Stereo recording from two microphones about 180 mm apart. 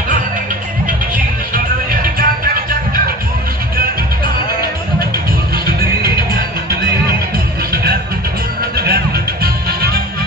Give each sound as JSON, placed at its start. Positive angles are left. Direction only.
{"t": 0.8, "sound": "music", "side_deg": -50}
{"t": 5.7, "sound": "music", "side_deg": -55}
{"t": 7.7, "sound": "music", "side_deg": -55}